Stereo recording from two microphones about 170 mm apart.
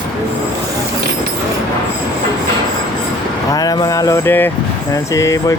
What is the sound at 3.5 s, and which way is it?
Speech, 25° left (ahead or behind).